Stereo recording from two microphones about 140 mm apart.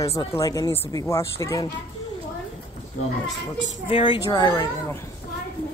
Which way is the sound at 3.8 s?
40° left (ahead or behind).